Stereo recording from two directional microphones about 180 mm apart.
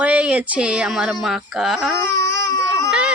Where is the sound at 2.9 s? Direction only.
5° right (ahead or behind).